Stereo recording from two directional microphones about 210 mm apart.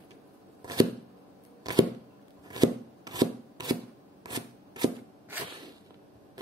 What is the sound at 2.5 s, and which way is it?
Chopping, 20° right (ahead or behind).